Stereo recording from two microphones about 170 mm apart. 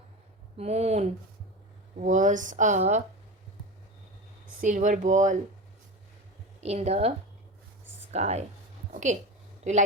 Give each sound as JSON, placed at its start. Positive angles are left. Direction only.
{"t": 0.5, "sound": "speech", "side_deg": -40}
{"t": 4.6, "sound": "speech", "side_deg": -50}
{"t": 6.6, "sound": "speech", "side_deg": -40}
{"t": 8.1, "sound": "speech", "side_deg": -40}
{"t": 8.9, "sound": "a sound", "side_deg": -45}
{"t": 9.6, "sound": "a man's voice", "side_deg": -40}